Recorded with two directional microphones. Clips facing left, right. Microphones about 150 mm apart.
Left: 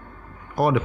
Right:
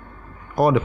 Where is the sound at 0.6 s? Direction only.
40° right (ahead or behind).